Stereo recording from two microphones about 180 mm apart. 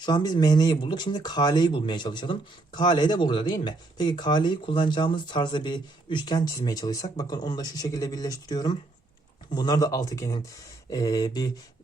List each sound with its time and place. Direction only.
0.0 s speech: 25° left (ahead or behind)